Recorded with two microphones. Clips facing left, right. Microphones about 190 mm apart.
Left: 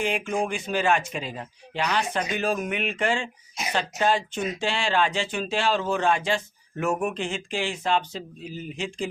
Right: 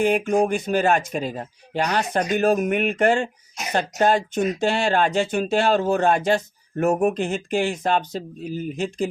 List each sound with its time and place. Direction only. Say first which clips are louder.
0.0 s speech: right 7 dB; 40° right (ahead or behind)